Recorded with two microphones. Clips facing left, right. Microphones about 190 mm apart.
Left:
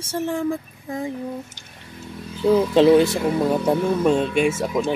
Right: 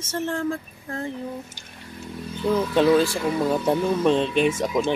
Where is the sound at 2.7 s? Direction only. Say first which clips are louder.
Left 3 dB; 25° left (ahead or behind).